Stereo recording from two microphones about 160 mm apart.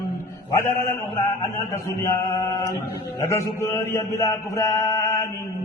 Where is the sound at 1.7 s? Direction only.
15° left (ahead or behind).